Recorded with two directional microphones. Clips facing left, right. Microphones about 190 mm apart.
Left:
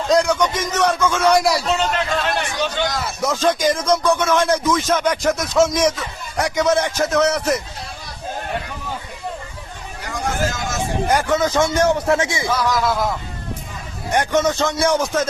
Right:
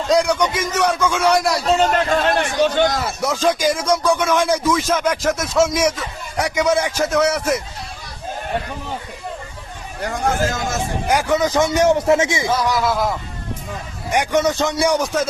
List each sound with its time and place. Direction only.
0.1 s speech: 10° right (ahead or behind)
1.7 s a man's voice: 45° right (ahead or behind)
3.2 s speech: 10° right (ahead or behind)
10.0 s chatter: 50° right (ahead or behind)
11.1 s speech: 10° right (ahead or behind)
12.6 s speech: 5° right (ahead or behind)
14.1 s speech: 10° right (ahead or behind)